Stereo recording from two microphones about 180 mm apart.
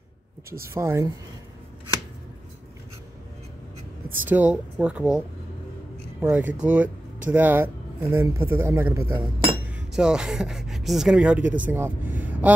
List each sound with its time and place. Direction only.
0.7 s speech: 15° right (ahead or behind)
4.3 s speech: 5° right (ahead or behind)
6.2 s speech: 10° right (ahead or behind)